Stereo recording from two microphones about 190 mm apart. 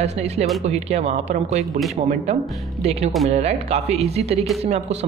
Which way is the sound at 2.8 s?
35° right (ahead or behind).